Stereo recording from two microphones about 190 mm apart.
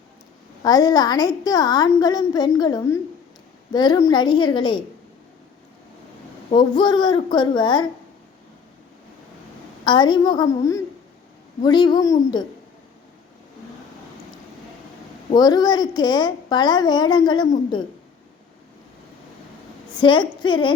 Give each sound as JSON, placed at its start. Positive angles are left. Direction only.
{"t": 0.6, "sound": "a woman's voice", "side_deg": 20}
{"t": 6.5, "sound": "a woman's voice", "side_deg": 25}
{"t": 9.8, "sound": "a woman's voice", "side_deg": 25}
{"t": 15.4, "sound": "a woman's voice", "side_deg": 20}
{"t": 20.0, "sound": "a woman's voice", "side_deg": 25}